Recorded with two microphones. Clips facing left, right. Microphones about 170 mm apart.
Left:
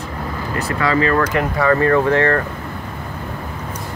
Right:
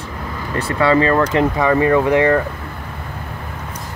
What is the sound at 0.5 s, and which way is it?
Speech, 30° right (ahead or behind).